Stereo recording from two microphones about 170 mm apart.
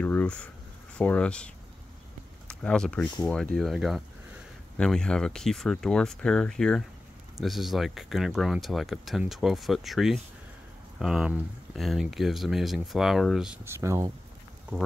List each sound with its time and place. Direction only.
0.0 s speech: 10° left (ahead or behind)
13.7 s speech: 15° right (ahead or behind)